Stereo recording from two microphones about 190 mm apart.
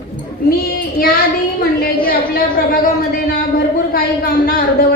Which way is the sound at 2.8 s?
50° left (ahead or behind).